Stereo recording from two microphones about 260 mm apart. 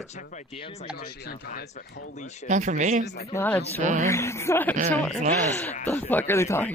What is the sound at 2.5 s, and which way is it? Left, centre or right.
Speech, right.